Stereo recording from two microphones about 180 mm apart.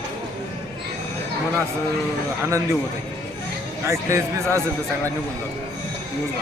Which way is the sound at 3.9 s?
15° right (ahead or behind).